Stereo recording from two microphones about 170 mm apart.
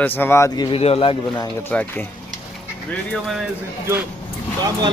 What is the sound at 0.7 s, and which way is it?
Speech, 35° left (ahead or behind).